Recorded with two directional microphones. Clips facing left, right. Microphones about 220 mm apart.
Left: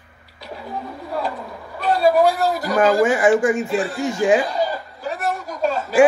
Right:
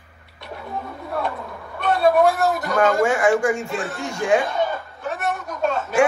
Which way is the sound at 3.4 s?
20° left (ahead or behind).